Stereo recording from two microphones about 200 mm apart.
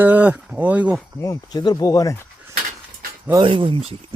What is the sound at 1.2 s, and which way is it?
Speech, 15° left (ahead or behind).